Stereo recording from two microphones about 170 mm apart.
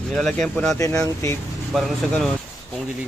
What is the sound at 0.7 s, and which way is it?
Speech, 20° left (ahead or behind).